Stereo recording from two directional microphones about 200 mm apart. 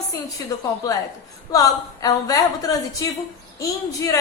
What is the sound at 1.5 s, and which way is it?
A woman's voice, 15° left (ahead or behind).